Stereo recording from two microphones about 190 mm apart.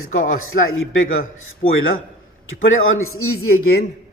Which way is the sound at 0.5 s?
70° left (ahead or behind).